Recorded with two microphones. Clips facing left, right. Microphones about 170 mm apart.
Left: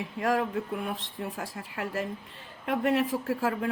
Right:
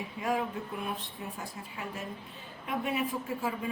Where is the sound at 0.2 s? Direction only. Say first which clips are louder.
Left 5 dB; 85° left.